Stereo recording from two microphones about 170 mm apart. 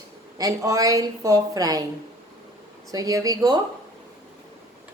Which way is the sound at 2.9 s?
20° right (ahead or behind).